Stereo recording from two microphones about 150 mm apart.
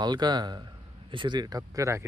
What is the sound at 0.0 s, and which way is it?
Speech, 30° right (ahead or behind).